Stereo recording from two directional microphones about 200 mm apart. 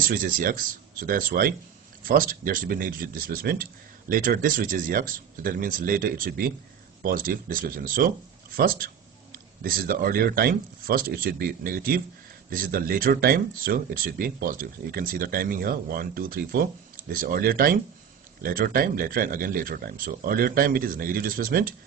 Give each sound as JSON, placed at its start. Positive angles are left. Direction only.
{"t": 0.1, "sound": "speech", "side_deg": -45}